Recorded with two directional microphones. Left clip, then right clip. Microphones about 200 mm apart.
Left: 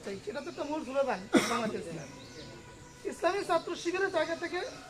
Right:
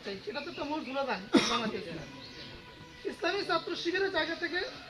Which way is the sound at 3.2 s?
45° right (ahead or behind).